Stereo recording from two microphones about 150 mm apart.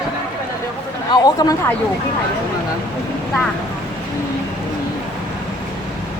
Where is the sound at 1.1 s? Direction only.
25° left (ahead or behind).